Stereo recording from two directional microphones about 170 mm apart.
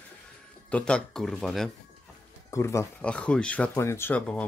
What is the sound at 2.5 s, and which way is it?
Speech, 15° left (ahead or behind).